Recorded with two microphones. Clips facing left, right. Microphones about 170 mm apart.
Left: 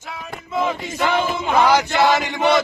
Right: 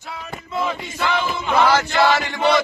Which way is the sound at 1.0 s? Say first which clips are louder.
Left 2 dB; 45° left (ahead or behind).